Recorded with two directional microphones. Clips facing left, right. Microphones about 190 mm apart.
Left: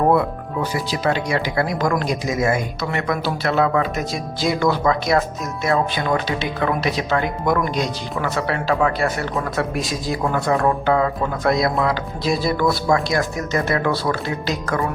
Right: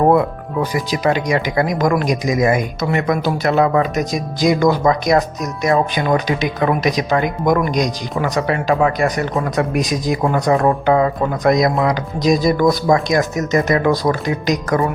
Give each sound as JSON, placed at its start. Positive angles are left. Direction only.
{"t": 0.6, "sound": "speech", "side_deg": -15}